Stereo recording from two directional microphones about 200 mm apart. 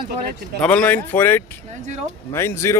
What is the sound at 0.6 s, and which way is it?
A man's voice, 5° left (ahead or behind).